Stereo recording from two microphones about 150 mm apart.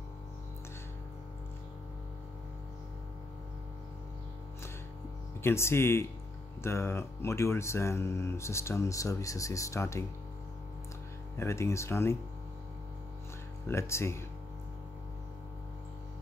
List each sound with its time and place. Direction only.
5.4 s speech: 15° left (ahead or behind)
11.3 s speech: 20° left (ahead or behind)
13.7 s speech: 15° left (ahead or behind)